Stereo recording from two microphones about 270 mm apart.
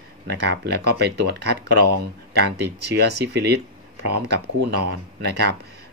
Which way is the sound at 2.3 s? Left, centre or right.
Right.